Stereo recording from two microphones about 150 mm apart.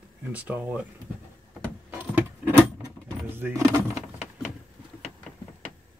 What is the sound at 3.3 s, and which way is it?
Vehicle, 15° right (ahead or behind).